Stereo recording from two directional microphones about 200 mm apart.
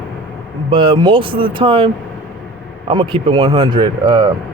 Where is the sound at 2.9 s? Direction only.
25° right (ahead or behind).